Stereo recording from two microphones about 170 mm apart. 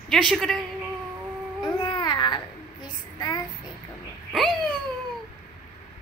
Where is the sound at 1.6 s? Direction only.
25° left (ahead or behind).